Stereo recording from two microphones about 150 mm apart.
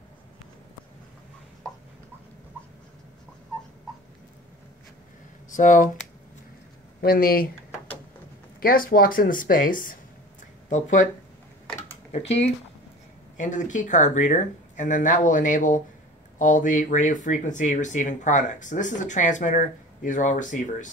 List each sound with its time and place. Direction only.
5.5 s speech: 55° left (ahead or behind)
7.0 s speech: 80° left
8.5 s speech: 75° left (ahead or behind); by 11.1 s 55° left (ahead or behind)
13.4 s speech: 55° left (ahead or behind)